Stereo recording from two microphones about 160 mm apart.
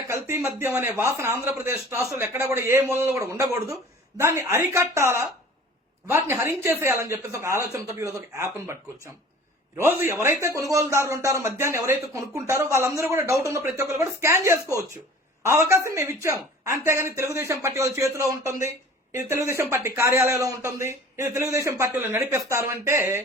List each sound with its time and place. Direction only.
0.1 s a man's voice: 15° right (ahead or behind)
9.7 s a man's voice: 15° right (ahead or behind)